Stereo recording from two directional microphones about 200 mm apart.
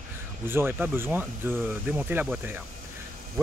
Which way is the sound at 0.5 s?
10° right (ahead or behind).